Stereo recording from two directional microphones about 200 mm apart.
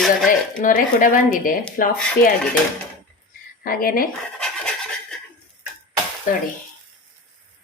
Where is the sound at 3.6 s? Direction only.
45° left (ahead or behind).